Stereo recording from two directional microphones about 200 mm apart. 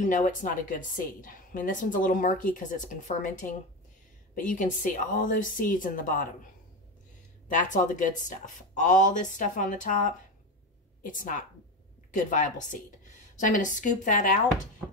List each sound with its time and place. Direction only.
0.0 s a woman's voice: 40° left (ahead or behind)
7.4 s a woman's voice: 40° left (ahead or behind)